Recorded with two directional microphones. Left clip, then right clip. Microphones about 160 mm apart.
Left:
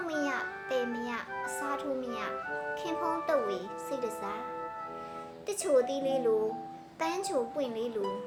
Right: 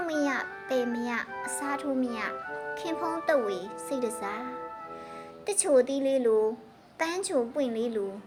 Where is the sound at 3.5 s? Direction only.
35° right (ahead or behind).